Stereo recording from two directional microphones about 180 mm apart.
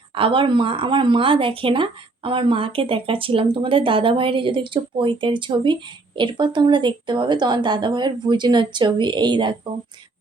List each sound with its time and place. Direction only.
0.1 s speech: 30° right (ahead or behind)